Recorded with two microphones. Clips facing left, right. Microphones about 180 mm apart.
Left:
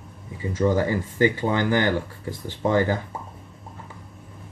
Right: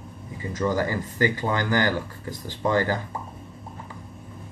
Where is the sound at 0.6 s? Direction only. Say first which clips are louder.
Left 3 dB; 25° left (ahead or behind).